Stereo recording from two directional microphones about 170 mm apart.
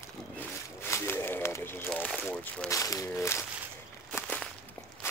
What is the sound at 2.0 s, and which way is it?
Boat, 10° left (ahead or behind).